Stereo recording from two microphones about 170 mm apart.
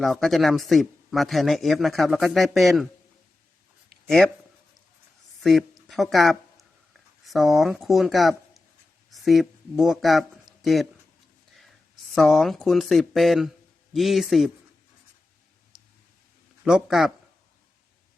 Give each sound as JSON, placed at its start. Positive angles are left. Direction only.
{"t": 0.0, "sound": "speech", "side_deg": 0}
{"t": 4.0, "sound": "speech", "side_deg": 0}
{"t": 5.4, "sound": "a sound", "side_deg": 0}
{"t": 7.3, "sound": "speech", "side_deg": 0}
{"t": 12.1, "sound": "speech", "side_deg": 0}
{"t": 16.6, "sound": "speech", "side_deg": -5}